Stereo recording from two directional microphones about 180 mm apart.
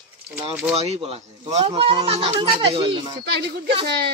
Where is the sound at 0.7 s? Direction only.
35° right (ahead or behind).